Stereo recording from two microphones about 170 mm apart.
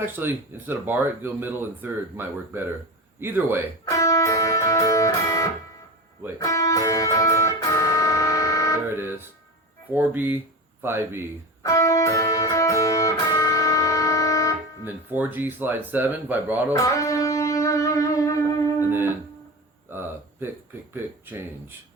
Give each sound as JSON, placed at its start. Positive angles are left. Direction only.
{"t": 0.0, "sound": "speech", "side_deg": -10}
{"t": 3.8, "sound": "music", "side_deg": 20}
{"t": 8.9, "sound": "music", "side_deg": -15}
{"t": 9.9, "sound": "speech", "side_deg": -10}
{"t": 11.6, "sound": "music", "side_deg": 20}
{"t": 14.8, "sound": "speech", "side_deg": -10}
{"t": 16.7, "sound": "music", "side_deg": 20}
{"t": 18.9, "sound": "music", "side_deg": -10}
{"t": 19.9, "sound": "a sound", "side_deg": -15}
{"t": 20.9, "sound": "speech", "side_deg": -10}